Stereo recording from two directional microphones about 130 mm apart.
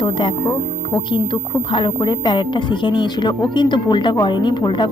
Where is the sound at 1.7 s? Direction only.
35° left (ahead or behind).